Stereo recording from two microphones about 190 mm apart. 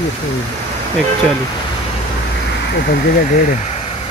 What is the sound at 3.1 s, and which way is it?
Speech, 45° left (ahead or behind).